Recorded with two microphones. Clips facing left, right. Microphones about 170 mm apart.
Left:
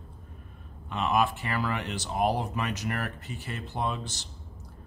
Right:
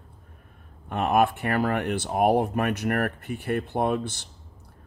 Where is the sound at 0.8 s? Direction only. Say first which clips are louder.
Right 5 dB; 55° right (ahead or behind).